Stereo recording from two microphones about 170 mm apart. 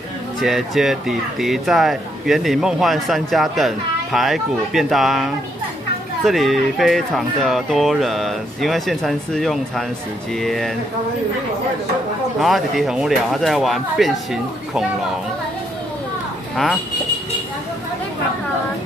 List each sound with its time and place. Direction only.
0.4 s speech: centre (ahead or behind)
12.4 s speech: centre (ahead or behind)